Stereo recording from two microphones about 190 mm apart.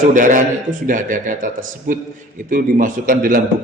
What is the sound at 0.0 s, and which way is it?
A man's voice, 45° right (ahead or behind).